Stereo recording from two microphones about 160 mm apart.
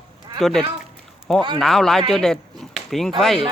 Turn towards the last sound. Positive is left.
turn(degrees=0)  # may be behind; listen again after turning